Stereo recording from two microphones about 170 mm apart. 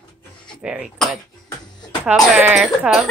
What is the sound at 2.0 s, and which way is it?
Speech, 10° right (ahead or behind).